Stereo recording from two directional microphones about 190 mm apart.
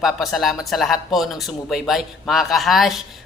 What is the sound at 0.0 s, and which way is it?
Speech, centre (ahead or behind).